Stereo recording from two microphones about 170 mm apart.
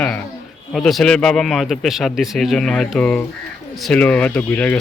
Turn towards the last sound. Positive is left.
turn(degrees=10)  # may be behind; listen again after turning